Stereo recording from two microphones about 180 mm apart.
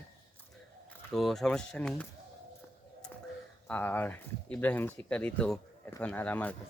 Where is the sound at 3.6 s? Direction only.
10° left (ahead or behind).